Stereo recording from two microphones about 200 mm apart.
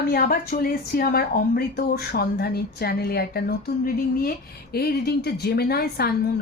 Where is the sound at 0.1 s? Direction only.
50° left (ahead or behind).